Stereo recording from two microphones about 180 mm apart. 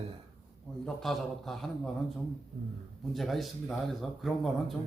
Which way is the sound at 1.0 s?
Centre (ahead or behind).